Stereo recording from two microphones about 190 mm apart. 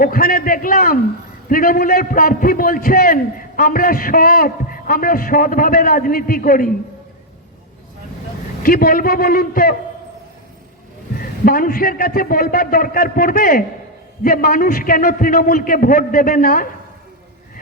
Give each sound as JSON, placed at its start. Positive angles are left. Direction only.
{"t": 0.0, "sound": "a man's voice", "side_deg": 50}
{"t": 8.6, "sound": "a man's voice", "side_deg": 50}
{"t": 11.2, "sound": "a man's voice", "side_deg": 50}